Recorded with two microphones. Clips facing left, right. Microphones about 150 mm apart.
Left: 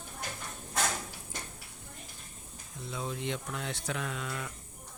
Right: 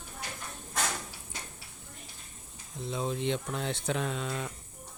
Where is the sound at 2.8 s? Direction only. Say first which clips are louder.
Right 5 dB; 25° right (ahead or behind).